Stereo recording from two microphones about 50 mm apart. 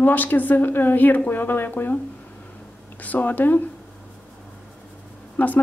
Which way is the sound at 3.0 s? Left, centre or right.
Left.